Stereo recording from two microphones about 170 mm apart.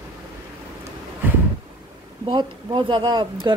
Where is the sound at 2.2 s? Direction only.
30° right (ahead or behind).